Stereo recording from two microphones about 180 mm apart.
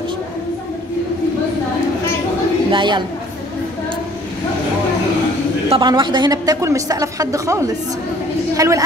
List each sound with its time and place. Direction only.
2.7 s a woman's voice: 25° right (ahead or behind)
5.7 s a woman's voice: 25° right (ahead or behind)